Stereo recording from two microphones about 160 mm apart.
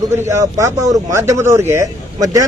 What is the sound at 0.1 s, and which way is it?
Speech, 20° right (ahead or behind).